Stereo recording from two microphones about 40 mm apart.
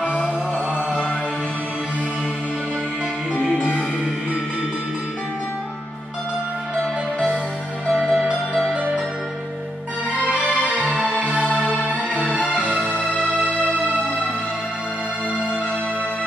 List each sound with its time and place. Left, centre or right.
6.8 s music: left
7.9 s music: centre
10.9 s music: right
12.9 s music: left